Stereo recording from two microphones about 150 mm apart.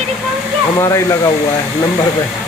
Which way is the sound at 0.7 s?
20° left (ahead or behind).